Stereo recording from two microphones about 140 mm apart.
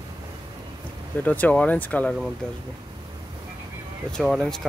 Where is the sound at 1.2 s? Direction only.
10° left (ahead or behind).